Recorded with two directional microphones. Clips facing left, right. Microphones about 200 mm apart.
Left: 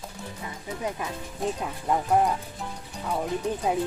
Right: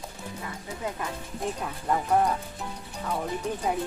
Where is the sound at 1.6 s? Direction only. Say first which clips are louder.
Left 1 dB; 10° left (ahead or behind).